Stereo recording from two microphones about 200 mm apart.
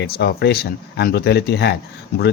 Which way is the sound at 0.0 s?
55° left (ahead or behind).